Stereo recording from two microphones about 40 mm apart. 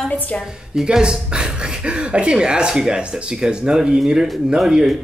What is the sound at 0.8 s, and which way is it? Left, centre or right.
Speech, right.